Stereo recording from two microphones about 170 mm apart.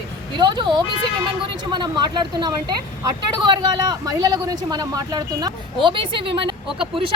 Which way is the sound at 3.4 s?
25° right (ahead or behind).